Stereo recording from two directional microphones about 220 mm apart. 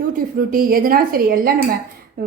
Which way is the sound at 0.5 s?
40° right (ahead or behind).